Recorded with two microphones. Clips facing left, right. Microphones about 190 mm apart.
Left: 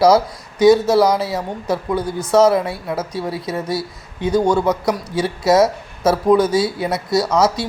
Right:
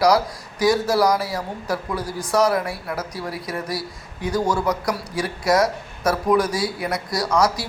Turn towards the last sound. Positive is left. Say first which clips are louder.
# left 4 dB
turn(degrees=25)  # may be behind; listen again after turning